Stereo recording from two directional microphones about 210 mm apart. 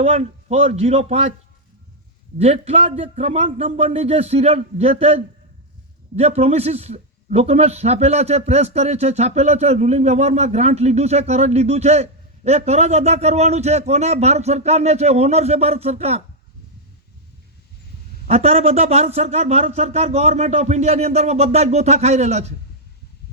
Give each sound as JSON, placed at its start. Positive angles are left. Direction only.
{"t": 0.0, "sound": "speech", "side_deg": -30}
{"t": 2.4, "sound": "speech", "side_deg": -30}
{"t": 18.3, "sound": "speech", "side_deg": -30}